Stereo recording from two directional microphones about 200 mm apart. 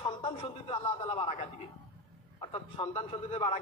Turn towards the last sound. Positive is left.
turn(degrees=25)  # may be behind; listen again after turning